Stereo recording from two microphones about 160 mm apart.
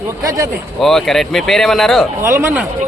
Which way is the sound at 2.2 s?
15° right (ahead or behind).